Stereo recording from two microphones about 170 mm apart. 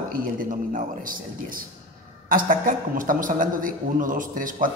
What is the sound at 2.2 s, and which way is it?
A man's voice, 55° right (ahead or behind).